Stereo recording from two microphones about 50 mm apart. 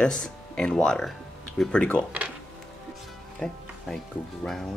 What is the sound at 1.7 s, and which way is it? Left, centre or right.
Speech, left.